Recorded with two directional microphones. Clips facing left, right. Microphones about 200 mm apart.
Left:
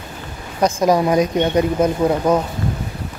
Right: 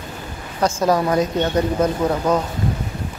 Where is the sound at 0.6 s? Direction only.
15° left (ahead or behind).